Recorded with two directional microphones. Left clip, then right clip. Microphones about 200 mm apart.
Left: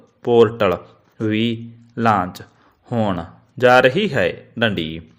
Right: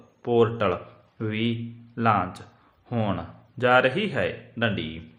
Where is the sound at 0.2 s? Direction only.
40° left (ahead or behind).